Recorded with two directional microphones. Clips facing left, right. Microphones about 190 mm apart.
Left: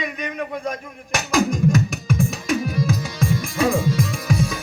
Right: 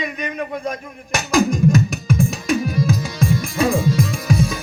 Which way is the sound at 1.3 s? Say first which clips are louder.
Right 3 dB; 35° right (ahead or behind).